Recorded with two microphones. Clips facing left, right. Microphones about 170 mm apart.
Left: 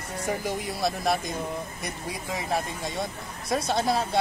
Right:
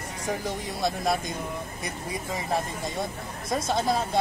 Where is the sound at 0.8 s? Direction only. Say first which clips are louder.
Right 1 dB; centre (ahead or behind).